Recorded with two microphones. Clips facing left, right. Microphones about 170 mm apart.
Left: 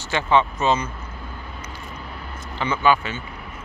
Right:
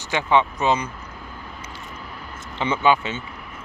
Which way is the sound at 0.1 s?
15° right (ahead or behind).